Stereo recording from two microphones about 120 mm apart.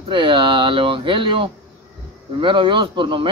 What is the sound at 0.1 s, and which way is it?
A man's voice, 45° right (ahead or behind).